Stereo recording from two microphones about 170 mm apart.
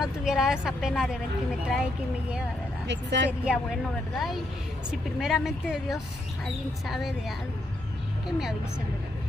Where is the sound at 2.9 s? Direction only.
90° right.